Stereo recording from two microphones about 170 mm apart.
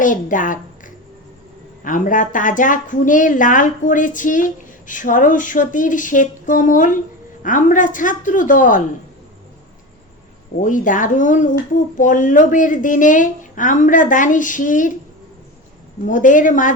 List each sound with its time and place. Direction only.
0.0 s a child's voice: 50° left (ahead or behind)
10.6 s a woman's voice: 50° left (ahead or behind)
16.0 s a woman's voice: 50° left (ahead or behind)